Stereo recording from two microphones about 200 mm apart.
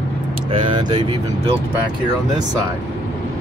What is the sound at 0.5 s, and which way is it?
Speech, 25° right (ahead or behind).